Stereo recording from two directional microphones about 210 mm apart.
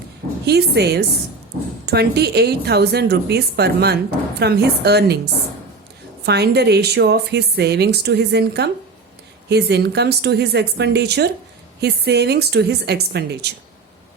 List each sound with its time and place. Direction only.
0.4 s a woman's voice: 50° right (ahead or behind)
6.2 s a woman's voice: 50° right (ahead or behind)